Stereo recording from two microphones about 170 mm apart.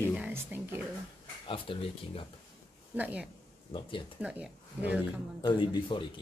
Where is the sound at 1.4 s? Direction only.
30° left (ahead or behind).